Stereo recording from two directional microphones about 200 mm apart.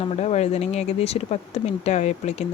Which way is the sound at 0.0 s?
35° left (ahead or behind).